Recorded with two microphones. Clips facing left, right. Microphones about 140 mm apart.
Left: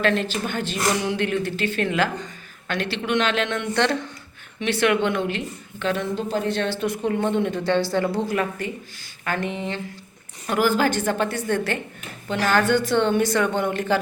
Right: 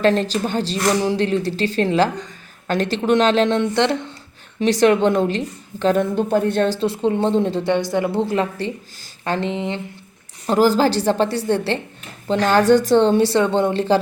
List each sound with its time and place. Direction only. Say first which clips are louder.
0.0 s a woman's voice: right 5 dB; 35° right (ahead or behind); by 4.1 s 20° right (ahead or behind)
4.6 s a woman's voice: right 6 dB; 35° right (ahead or behind)
6.0 s speech: right 7 dB; 55° right (ahead or behind)
6.7 s a woman's voice: right 4 dB; 30° right (ahead or behind)
7.7 s a woman's voice: left 1 dB; 20° right (ahead or behind)
10.4 s a woman's voice: right 5 dB; 35° right (ahead or behind)